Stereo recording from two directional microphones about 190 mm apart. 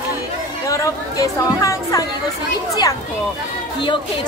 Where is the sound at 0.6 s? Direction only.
15° left (ahead or behind).